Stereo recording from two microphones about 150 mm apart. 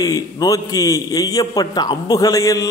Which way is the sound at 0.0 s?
25° left (ahead or behind).